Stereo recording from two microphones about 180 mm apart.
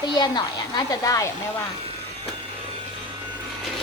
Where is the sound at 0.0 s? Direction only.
25° left (ahead or behind).